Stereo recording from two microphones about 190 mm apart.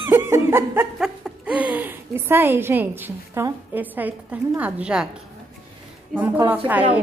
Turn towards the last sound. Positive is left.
turn(degrees=-10)  # may be behind; listen again after turning